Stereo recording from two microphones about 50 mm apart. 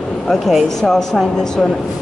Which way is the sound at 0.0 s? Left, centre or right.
Centre.